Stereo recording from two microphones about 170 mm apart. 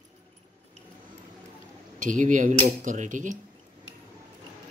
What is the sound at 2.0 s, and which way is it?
Speech, 45° right (ahead or behind).